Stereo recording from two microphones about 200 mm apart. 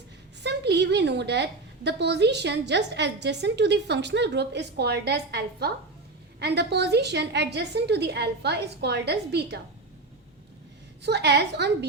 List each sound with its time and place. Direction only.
0.4 s a woman's voice: 60° right (ahead or behind)
11.0 s a woman's voice: 55° right (ahead or behind)